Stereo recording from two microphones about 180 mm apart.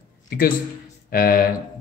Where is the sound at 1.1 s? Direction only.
55° left (ahead or behind).